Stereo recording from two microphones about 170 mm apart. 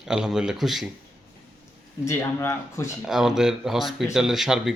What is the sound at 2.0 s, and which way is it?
Speech, 15° left (ahead or behind).